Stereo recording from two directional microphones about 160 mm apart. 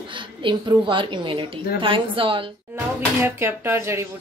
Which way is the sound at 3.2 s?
15° right (ahead or behind).